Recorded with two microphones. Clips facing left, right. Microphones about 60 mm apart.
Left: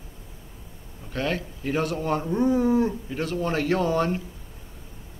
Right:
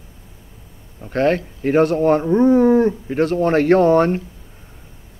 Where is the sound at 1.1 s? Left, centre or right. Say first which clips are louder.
Right 10 dB; right.